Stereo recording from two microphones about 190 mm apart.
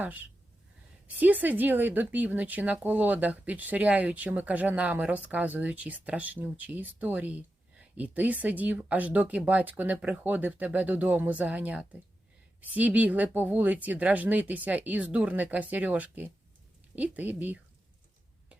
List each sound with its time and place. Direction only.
0.0 s speech: 10° right (ahead or behind)